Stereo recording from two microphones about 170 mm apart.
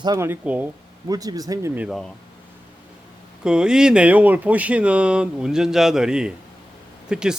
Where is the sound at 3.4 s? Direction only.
5° right (ahead or behind).